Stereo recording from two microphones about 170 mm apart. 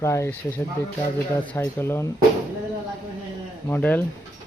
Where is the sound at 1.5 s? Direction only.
15° left (ahead or behind).